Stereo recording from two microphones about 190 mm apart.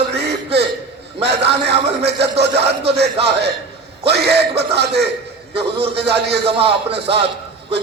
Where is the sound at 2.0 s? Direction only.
60° right (ahead or behind).